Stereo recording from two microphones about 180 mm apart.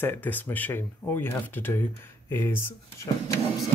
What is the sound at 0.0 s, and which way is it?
Speech, 10° left (ahead or behind).